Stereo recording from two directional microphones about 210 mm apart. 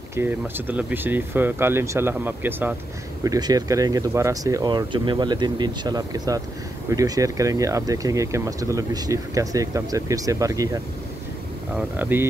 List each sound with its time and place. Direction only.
0.1 s speech: 10° right (ahead or behind)